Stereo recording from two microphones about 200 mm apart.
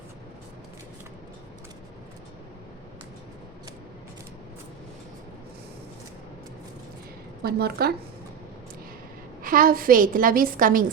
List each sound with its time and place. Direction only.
7.4 s a woman's voice: 50° right (ahead or behind)
9.4 s a woman's voice: 45° right (ahead or behind)